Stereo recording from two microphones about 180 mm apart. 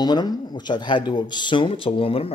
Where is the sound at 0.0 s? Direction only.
20° left (ahead or behind).